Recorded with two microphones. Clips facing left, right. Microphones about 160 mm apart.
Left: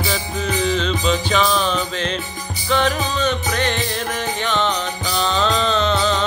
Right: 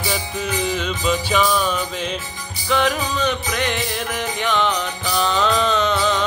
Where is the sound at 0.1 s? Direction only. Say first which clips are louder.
Left 1 dB; 10° right (ahead or behind).